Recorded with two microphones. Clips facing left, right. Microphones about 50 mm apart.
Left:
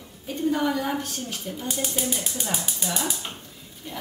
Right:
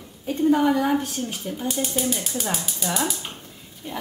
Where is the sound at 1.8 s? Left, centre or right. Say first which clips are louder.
Right 3 dB; centre.